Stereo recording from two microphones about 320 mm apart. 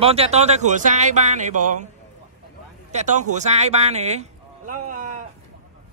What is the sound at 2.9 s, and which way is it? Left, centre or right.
A man's voice, right.